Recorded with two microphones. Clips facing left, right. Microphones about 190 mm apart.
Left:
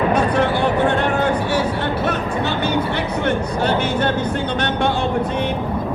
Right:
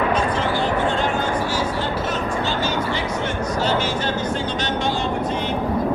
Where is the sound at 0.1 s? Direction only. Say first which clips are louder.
Left 4 dB; 65° left (ahead or behind).